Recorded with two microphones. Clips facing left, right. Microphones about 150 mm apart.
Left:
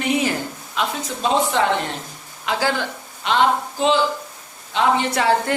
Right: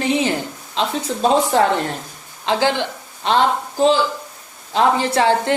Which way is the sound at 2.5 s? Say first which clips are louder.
Right 4 dB; 25° right (ahead or behind).